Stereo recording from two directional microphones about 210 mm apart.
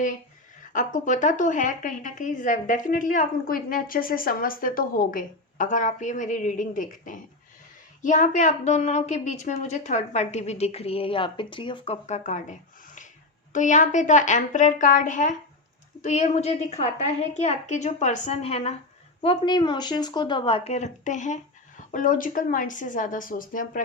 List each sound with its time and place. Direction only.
0.7 s a woman's voice: 35° left (ahead or behind)